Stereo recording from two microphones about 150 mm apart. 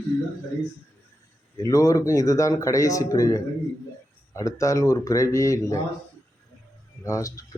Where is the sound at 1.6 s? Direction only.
20° left (ahead or behind).